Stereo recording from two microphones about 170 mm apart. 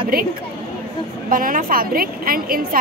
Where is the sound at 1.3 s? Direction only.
55° right (ahead or behind).